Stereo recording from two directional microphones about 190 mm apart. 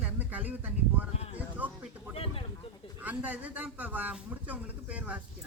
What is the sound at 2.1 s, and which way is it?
Speech, 30° left (ahead or behind).